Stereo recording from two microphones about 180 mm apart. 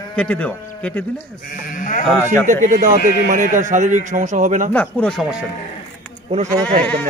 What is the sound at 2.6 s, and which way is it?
A man's voice, 45° right (ahead or behind).